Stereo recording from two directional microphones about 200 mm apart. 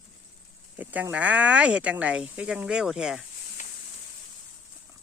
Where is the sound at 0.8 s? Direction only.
10° right (ahead or behind).